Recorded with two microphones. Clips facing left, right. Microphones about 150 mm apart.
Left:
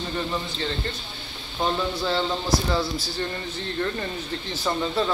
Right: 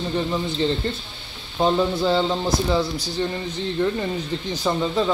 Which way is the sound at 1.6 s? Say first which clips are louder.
Right 6 dB; 20° right (ahead or behind).